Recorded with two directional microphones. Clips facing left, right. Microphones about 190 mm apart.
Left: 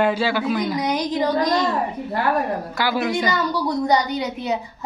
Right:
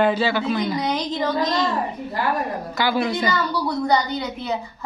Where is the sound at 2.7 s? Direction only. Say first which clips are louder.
Right 1 dB; 5° left (ahead or behind).